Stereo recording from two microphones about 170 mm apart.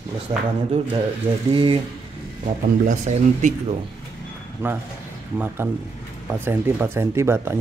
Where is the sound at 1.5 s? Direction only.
30° right (ahead or behind).